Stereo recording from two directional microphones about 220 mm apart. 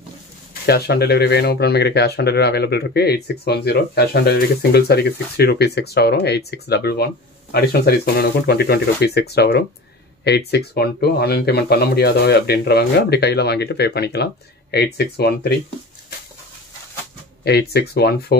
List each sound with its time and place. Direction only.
0.7 s speech: 45° left (ahead or behind)
17.5 s speech: 45° left (ahead or behind)